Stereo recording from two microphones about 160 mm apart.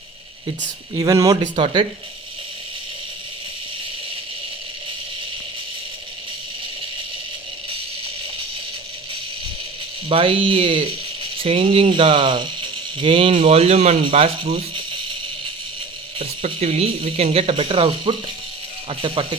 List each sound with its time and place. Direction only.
0.9 s speech: 20° right (ahead or behind)
1.5 s speech: 35° right (ahead or behind)
10.1 s speech: 35° right (ahead or behind)
16.1 s speech: 40° right (ahead or behind)